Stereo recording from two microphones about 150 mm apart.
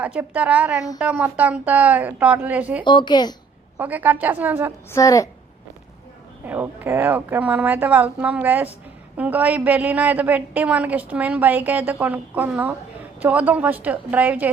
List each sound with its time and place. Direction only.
0.0 s a woman's voice: 10° right (ahead or behind)
2.8 s speech: 30° left (ahead or behind)
3.8 s a woman's voice: 10° right (ahead or behind)
4.9 s a woman's voice: 20° left (ahead or behind)
6.4 s a woman's voice: 10° right (ahead or behind)